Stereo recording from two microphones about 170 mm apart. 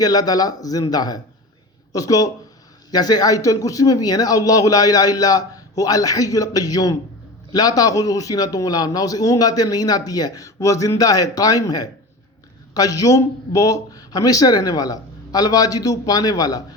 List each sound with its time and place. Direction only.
0.0 s a man's voice: 20° left (ahead or behind)